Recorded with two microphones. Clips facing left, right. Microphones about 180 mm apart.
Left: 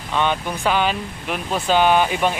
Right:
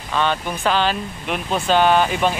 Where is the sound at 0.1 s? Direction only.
15° left (ahead or behind).